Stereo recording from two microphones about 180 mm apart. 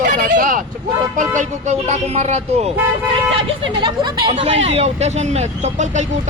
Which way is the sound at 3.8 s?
25° right (ahead or behind).